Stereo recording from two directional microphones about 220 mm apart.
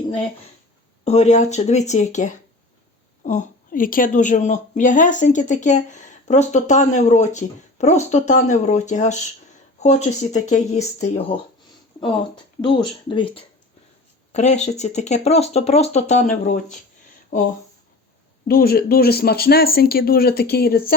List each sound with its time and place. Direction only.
1.0 s a woman's voice: 30° left (ahead or behind)
12.6 s a woman's voice: 20° left (ahead or behind); by 20.9 s 45° left (ahead or behind)